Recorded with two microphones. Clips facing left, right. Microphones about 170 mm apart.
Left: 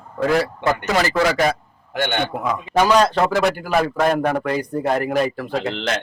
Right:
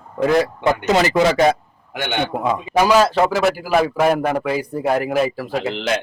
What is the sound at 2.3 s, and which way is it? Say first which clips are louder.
Speech: right 3 dB; 25° right (ahead or behind).